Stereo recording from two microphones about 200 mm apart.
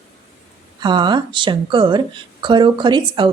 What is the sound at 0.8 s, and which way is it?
Speech, 20° right (ahead or behind).